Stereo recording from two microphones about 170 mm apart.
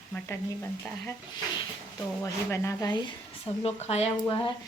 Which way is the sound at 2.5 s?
15° left (ahead or behind).